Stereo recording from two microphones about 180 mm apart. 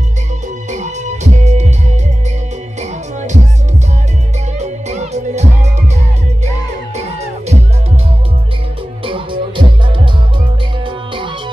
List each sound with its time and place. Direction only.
0.7 s music: 40° right (ahead or behind)
4.6 s music: 40° right (ahead or behind)
7.0 s music: 35° right (ahead or behind)
9.0 s music: 30° right (ahead or behind)